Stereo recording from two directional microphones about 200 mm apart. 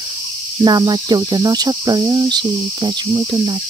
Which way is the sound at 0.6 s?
20° right (ahead or behind).